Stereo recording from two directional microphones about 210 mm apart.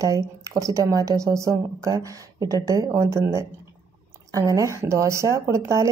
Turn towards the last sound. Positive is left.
turn(degrees=-15)  # may be behind; listen again after turning